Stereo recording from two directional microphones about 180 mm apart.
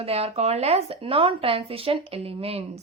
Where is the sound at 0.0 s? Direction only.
35° right (ahead or behind).